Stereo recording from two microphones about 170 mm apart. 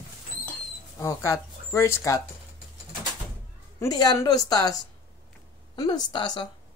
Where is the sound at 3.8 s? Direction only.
25° left (ahead or behind).